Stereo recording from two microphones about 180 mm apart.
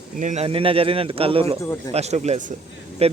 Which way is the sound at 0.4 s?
30° right (ahead or behind).